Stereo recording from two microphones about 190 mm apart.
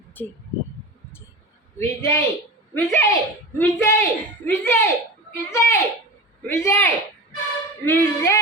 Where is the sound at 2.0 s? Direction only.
15° left (ahead or behind).